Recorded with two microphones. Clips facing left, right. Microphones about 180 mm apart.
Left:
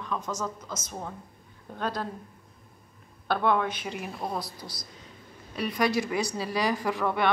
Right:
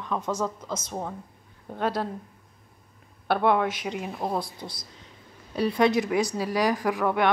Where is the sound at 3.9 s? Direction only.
20° right (ahead or behind).